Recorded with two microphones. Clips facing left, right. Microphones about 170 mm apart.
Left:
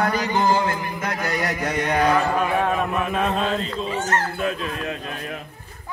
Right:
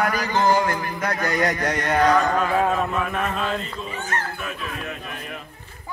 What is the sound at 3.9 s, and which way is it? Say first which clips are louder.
Speech: left 7 dB; 85° left.